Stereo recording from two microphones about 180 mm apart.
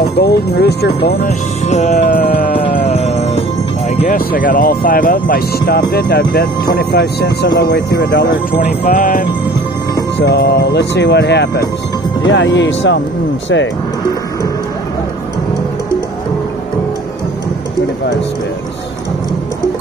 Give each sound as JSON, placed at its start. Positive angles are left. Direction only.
{"t": 0.2, "sound": "speech", "side_deg": 65}
{"t": 1.7, "sound": "music", "side_deg": 40}
{"t": 2.8, "sound": "music", "side_deg": 35}
{"t": 4.1, "sound": "speech", "side_deg": 55}
{"t": 10.1, "sound": "speech", "side_deg": 70}
{"t": 12.3, "sound": "speech", "side_deg": 85}